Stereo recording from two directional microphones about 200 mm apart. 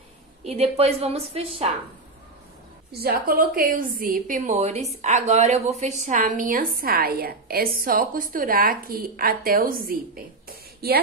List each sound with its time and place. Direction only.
0.5 s a woman's voice: 30° right (ahead or behind)
2.9 s a woman's voice: 50° right (ahead or behind)